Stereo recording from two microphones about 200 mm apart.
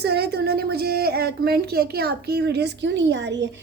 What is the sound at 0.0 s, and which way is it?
A woman's voice, 55° right (ahead or behind).